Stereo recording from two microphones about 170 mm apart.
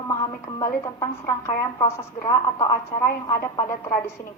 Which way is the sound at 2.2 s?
20° left (ahead or behind).